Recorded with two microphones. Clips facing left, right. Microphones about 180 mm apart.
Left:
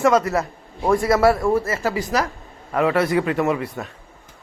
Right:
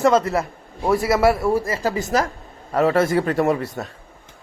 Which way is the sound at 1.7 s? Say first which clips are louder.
Right 1 dB; 35° right (ahead or behind).